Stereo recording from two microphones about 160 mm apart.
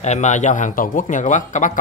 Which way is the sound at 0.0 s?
45° left (ahead or behind).